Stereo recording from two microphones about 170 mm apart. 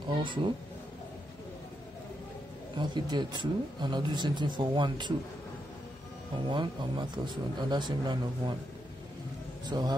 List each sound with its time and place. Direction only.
2.8 s speech: 25° right (ahead or behind)
6.3 s speech: 25° right (ahead or behind)
9.7 s speech: 25° right (ahead or behind)